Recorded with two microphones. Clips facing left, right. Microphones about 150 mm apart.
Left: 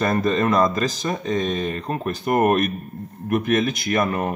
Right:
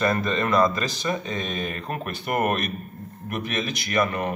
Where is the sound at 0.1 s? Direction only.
40° left (ahead or behind).